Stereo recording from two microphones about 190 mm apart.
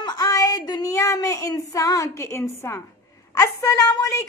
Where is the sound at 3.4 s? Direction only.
20° left (ahead or behind).